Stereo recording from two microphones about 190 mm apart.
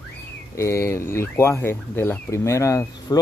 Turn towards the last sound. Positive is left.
turn(degrees=20)  # may be behind; listen again after turning